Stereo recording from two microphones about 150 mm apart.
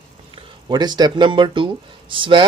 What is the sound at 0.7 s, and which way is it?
Speech, 30° right (ahead or behind).